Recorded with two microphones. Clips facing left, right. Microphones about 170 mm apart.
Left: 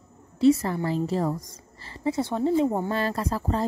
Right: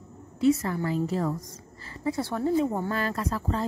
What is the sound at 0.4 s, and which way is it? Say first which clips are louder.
Speech: left 3 dB; 30° left (ahead or behind).